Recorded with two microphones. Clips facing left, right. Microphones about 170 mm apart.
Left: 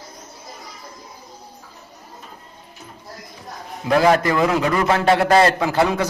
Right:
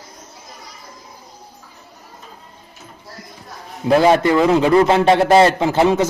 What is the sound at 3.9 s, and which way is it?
A man's voice, 25° right (ahead or behind).